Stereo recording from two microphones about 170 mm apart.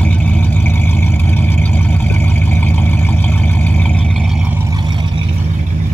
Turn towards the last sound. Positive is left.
turn(degrees=-25)  # may be behind; listen again after turning